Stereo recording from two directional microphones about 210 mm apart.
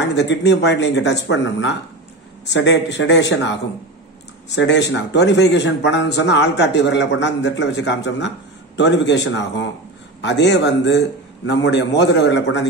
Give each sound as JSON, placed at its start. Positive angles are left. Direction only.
{"t": 0.0, "sound": "speech", "side_deg": 55}